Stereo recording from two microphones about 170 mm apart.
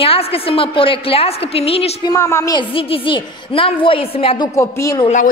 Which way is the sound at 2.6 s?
30° left (ahead or behind).